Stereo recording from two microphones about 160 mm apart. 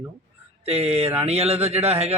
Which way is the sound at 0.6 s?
40° right (ahead or behind).